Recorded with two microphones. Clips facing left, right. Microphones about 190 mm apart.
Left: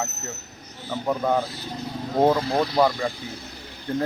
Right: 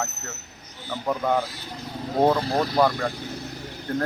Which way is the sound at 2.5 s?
40° right (ahead or behind).